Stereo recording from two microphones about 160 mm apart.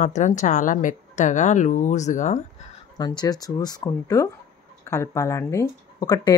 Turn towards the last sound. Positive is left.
turn(degrees=20)  # may be behind; listen again after turning